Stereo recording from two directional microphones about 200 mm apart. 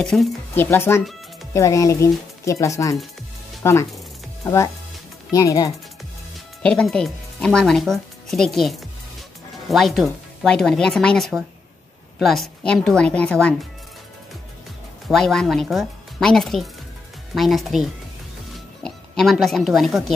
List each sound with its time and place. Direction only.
0.0 s speech: 5° left (ahead or behind)
5.3 s speech: 15° left (ahead or behind)
6.6 s speech: 5° left (ahead or behind)
15.0 s speech: centre (ahead or behind)